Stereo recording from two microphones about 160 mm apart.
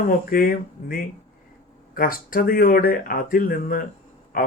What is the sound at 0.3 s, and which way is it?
Speech, 60° left (ahead or behind).